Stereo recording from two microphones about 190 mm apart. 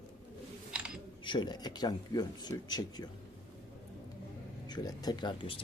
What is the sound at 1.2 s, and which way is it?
Speech, 25° left (ahead or behind).